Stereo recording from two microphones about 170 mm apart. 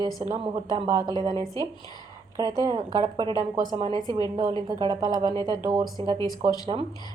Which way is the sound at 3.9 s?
25° left (ahead or behind).